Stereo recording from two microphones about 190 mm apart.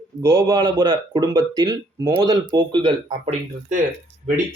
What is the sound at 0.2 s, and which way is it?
Speech, 20° right (ahead or behind).